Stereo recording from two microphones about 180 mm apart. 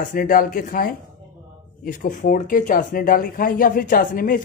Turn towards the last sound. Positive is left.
turn(degrees=50)  # may be behind; listen again after turning